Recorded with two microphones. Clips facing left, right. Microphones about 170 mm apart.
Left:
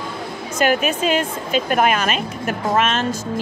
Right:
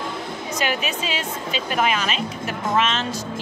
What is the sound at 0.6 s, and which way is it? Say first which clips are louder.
Speech: left 8 dB; 50° left (ahead or behind).